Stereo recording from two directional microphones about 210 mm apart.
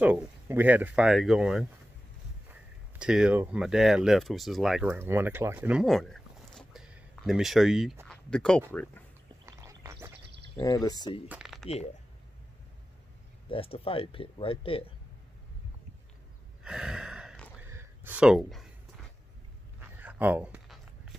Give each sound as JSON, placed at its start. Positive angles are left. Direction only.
{"t": 0.0, "sound": "speech", "side_deg": -10}
{"t": 3.0, "sound": "speech", "side_deg": -5}
{"t": 4.8, "sound": "speech", "side_deg": -10}
{"t": 9.5, "sound": "a sound", "side_deg": -15}
{"t": 10.5, "sound": "speech", "side_deg": 15}
{"t": 11.1, "sound": "speech", "side_deg": -5}
{"t": 13.5, "sound": "speech", "side_deg": 25}
{"t": 16.6, "sound": "a sound", "side_deg": -5}
{"t": 19.8, "sound": "a sound", "side_deg": -10}